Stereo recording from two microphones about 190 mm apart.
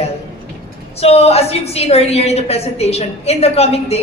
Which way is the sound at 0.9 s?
35° left (ahead or behind).